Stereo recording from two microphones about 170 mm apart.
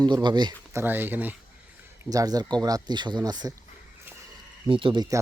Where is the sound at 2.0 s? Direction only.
20° right (ahead or behind).